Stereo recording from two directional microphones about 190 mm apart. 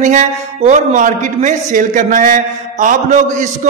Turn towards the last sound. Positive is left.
turn(degrees=-45)  # may be behind; listen again after turning